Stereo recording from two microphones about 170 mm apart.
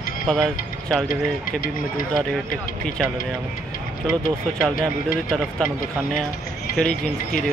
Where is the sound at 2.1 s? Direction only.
5° left (ahead or behind).